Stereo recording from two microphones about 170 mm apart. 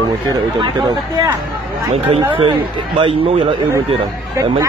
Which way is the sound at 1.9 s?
35° right (ahead or behind).